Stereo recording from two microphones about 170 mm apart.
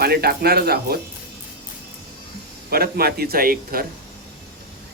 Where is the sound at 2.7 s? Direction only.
65° right (ahead or behind).